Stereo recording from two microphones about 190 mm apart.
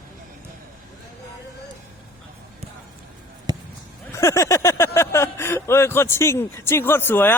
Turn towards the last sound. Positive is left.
turn(degrees=10)  # may be behind; listen again after turning